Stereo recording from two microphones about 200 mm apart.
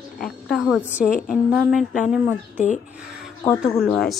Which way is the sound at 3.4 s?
15° left (ahead or behind).